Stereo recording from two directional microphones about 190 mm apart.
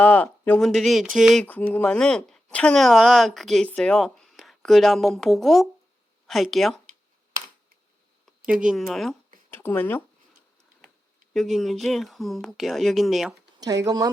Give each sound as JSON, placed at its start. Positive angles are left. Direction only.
{"t": 0.0, "sound": "speech", "side_deg": 10}
{"t": 8.6, "sound": "speech", "side_deg": 0}
{"t": 11.3, "sound": "speech", "side_deg": 0}
{"t": 13.8, "sound": "speech", "side_deg": -20}